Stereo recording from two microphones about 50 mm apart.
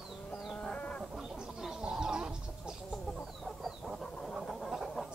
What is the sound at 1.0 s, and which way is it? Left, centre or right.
Chicken, centre.